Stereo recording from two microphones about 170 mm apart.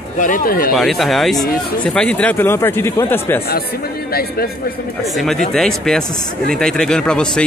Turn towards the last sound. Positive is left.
turn(degrees=5)  # may be behind; listen again after turning